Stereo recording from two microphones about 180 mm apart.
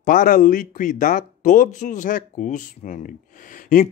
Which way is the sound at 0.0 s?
50° left (ahead or behind).